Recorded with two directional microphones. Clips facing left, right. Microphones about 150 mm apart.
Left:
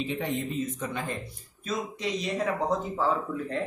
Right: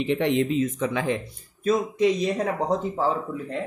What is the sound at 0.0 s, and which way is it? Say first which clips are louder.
Speech: right 8 dB; 70° right (ahead or behind).